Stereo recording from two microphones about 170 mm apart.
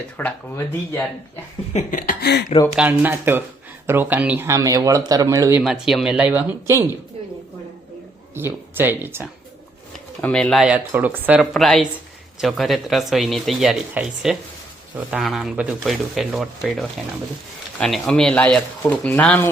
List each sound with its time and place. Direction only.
0.2 s speech: 10° left (ahead or behind)
1.7 s speech: 50° left (ahead or behind)
2.7 s speech: 10° right (ahead or behind)
5.6 s speech: 5° right (ahead or behind)
8.4 s speech: 10° right (ahead or behind)
10.2 s speech: 5° left (ahead or behind)
11.5 s speech: centre (ahead or behind)